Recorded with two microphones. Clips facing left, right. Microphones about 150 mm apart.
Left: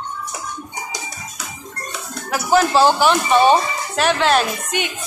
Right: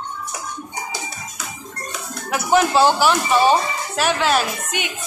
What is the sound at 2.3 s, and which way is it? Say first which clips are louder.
Speech: left 1 dB; 20° right (ahead or behind).